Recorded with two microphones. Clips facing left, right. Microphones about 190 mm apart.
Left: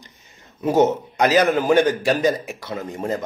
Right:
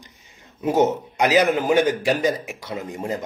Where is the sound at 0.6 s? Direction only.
15° right (ahead or behind).